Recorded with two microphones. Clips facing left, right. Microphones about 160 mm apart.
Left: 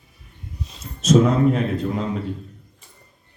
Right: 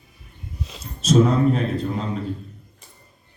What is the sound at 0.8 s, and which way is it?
Speech, 35° right (ahead or behind).